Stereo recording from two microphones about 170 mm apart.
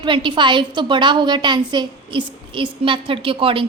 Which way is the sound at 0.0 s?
30° right (ahead or behind).